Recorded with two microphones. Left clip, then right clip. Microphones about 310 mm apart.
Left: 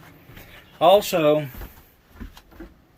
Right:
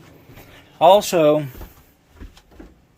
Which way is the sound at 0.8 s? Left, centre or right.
Centre.